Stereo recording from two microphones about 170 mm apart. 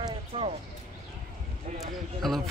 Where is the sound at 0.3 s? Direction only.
35° right (ahead or behind).